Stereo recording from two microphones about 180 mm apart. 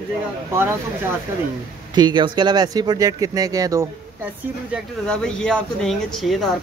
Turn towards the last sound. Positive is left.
turn(degrees=0)  # may be behind; listen again after turning